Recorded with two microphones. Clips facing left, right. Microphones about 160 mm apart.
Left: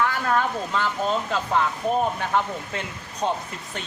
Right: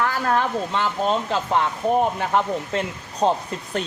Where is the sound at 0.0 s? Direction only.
35° right (ahead or behind).